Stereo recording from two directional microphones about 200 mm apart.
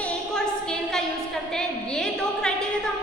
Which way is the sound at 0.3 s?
5° left (ahead or behind).